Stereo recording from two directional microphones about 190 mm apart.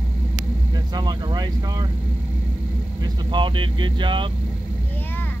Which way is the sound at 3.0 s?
25° right (ahead or behind).